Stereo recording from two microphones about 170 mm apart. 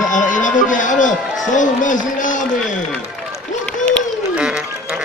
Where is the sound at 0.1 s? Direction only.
50° left (ahead or behind).